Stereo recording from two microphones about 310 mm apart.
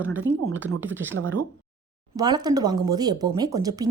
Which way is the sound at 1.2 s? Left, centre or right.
Right.